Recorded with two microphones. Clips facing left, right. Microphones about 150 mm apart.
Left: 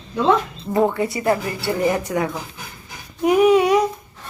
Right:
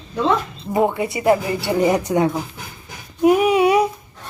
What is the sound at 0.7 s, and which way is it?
A woman's voice, 15° right (ahead or behind).